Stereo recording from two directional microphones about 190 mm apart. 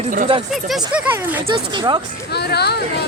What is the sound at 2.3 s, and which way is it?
Speech, 60° left (ahead or behind).